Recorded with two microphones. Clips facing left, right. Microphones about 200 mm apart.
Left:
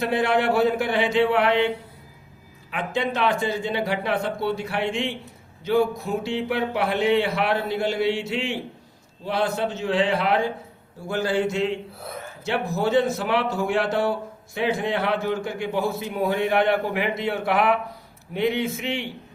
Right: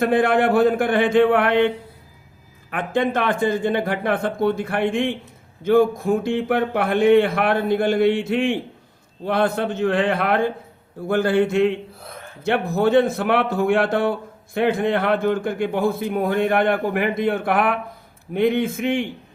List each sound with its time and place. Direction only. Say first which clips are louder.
0.0 s a man's voice: right 4 dB; 50° right (ahead or behind)